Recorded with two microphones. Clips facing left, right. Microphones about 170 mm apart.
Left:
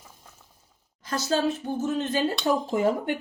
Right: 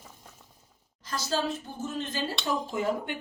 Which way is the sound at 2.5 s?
50° left (ahead or behind).